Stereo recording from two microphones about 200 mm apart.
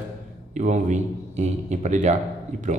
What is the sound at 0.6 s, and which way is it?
A man's voice, 35° right (ahead or behind).